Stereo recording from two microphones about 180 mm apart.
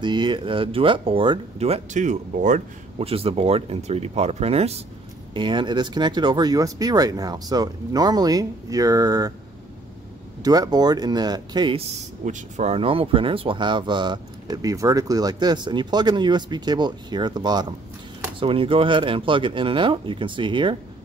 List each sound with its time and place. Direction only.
0.0 s speech: 25° right (ahead or behind); by 3.1 s 45° right (ahead or behind)
3.1 s speech: 35° right (ahead or behind)
10.4 s speech: 20° right (ahead or behind)
12.3 s speech: 40° right (ahead or behind)